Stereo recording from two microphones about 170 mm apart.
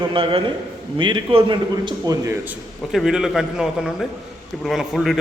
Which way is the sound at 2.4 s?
Centre (ahead or behind).